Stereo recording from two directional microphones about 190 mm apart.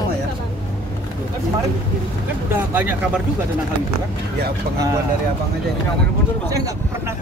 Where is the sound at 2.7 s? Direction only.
10° right (ahead or behind).